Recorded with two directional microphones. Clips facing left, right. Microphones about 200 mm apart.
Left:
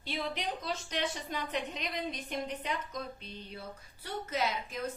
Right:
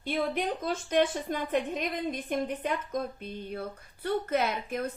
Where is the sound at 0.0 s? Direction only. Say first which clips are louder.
Right 7 dB; 50° right (ahead or behind).